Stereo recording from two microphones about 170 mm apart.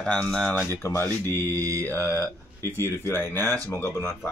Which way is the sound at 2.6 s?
15° right (ahead or behind).